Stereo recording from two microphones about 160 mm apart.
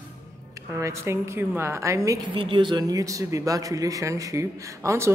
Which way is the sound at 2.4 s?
30° right (ahead or behind).